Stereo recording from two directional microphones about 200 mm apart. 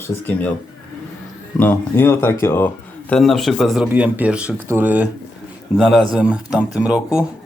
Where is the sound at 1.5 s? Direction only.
10° left (ahead or behind).